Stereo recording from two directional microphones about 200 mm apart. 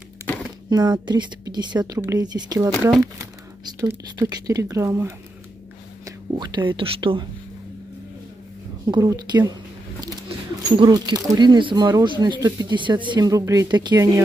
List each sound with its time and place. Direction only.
0.7 s speech: 20° right (ahead or behind)
3.8 s speech: 20° right (ahead or behind)
8.8 s speech: 15° right (ahead or behind)
10.8 s speech: 20° right (ahead or behind)